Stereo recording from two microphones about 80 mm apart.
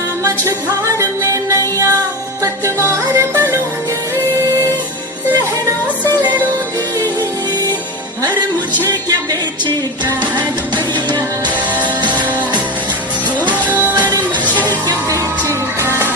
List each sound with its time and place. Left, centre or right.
0.9 s music: right
15.1 s music: right